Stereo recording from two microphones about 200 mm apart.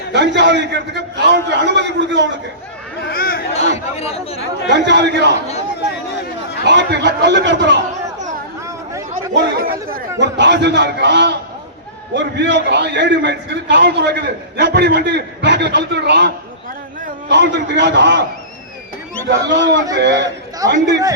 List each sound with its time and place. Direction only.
0.1 s a man's voice: 60° right (ahead or behind)
3.1 s speech: 50° left (ahead or behind)
3.5 s speech: 30° left (ahead or behind)
4.7 s a man's voice: 60° right (ahead or behind)
6.7 s a man's voice: 60° right (ahead or behind)
9.3 s chatter: 55° right (ahead or behind)
10.2 s a man's voice: 60° right (ahead or behind)
19.3 s a man's voice: 60° right (ahead or behind)
20.6 s a man's voice: 15° right (ahead or behind)